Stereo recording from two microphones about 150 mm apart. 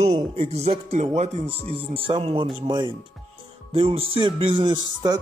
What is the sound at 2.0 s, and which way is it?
Music, 40° right (ahead or behind).